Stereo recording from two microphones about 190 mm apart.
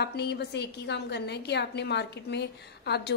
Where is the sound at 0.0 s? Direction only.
60° left (ahead or behind).